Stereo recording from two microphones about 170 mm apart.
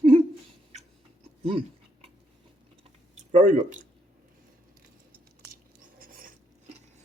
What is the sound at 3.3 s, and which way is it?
Speech, 45° right (ahead or behind).